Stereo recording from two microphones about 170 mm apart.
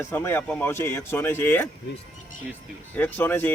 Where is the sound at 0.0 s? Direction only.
15° left (ahead or behind).